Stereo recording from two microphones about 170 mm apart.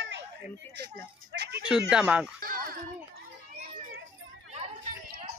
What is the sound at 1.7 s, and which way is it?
Speech, 5° right (ahead or behind).